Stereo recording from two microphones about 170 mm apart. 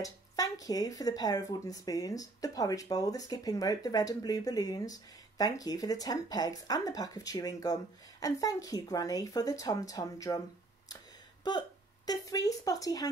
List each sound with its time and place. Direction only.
0.0 s speech: 20° left (ahead or behind)
12.1 s speech: 20° left (ahead or behind)